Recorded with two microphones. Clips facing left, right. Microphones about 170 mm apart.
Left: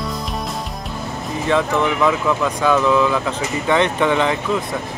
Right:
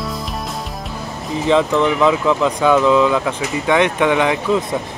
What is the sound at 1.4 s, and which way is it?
Speech, 15° right (ahead or behind).